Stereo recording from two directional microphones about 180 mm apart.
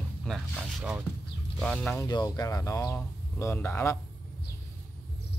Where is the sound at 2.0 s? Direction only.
20° left (ahead or behind).